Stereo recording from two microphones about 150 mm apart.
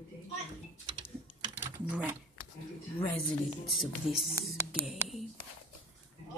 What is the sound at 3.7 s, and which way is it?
Speech, centre (ahead or behind).